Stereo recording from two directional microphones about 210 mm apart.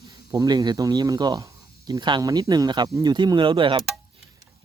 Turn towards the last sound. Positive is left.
turn(degrees=-25)  # may be behind; listen again after turning